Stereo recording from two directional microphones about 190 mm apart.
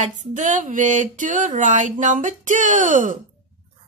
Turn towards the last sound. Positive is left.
turn(degrees=-45)  # may be behind; listen again after turning